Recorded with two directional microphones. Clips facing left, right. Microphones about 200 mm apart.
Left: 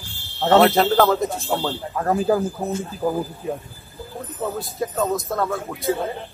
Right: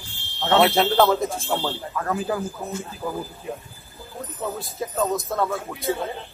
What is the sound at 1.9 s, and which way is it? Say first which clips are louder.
Speech: left 8 dB; 35° left (ahead or behind).